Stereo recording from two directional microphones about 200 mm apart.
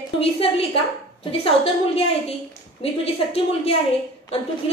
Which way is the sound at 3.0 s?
30° left (ahead or behind).